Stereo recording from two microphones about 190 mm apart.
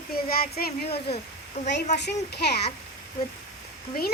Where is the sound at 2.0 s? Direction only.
60° left (ahead or behind).